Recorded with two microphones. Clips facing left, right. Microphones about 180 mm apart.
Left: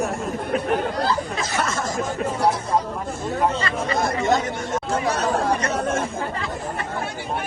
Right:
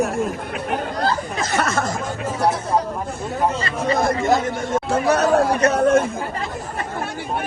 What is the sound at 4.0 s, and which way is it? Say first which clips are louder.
Speech: right 1 dB; 55° right (ahead or behind).